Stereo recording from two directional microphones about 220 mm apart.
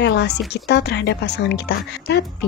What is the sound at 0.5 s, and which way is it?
Speech, 50° left (ahead or behind).